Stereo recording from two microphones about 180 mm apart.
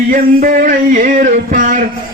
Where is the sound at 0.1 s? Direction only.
50° right (ahead or behind).